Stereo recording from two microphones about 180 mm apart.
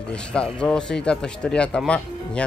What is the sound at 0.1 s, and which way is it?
Speech, 5° left (ahead or behind).